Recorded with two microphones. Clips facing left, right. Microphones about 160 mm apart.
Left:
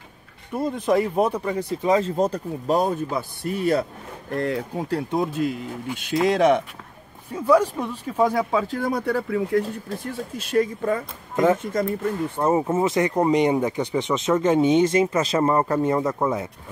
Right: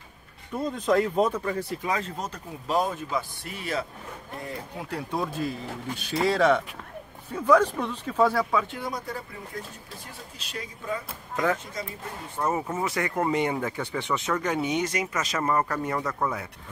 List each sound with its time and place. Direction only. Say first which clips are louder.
0.6 s speech: left 3 dB; 10° left (ahead or behind); by 3.8 s 45° left (ahead or behind)
4.3 s speech: left 13 dB; 80° left
4.7 s speech: left 8 dB; 35° left (ahead or behind)
5.1 s speech: left 4 dB; 20° left (ahead or behind)
8.5 s speech: left 3 dB; 30° left (ahead or behind)
8.7 s speech: left 10 dB; 55° left (ahead or behind); by 9.7 s 75° left (ahead or behind)
9.8 s speech: left 13 dB; 50° left (ahead or behind)
11.3 s speech: left 7 dB; 20° left (ahead or behind)
11.6 s speech: left 12 dB; 50° left (ahead or behind)
12.4 s speech: left 6 dB; 30° left (ahead or behind)